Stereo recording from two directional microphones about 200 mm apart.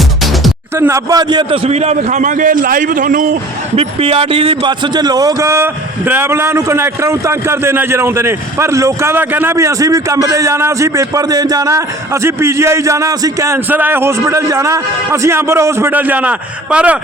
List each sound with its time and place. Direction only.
0.8 s a man's voice: 15° right (ahead or behind); by 3.3 s 45° right (ahead or behind)
3.8 s a man's voice: 30° right (ahead or behind); by 17.0 s 5° right (ahead or behind)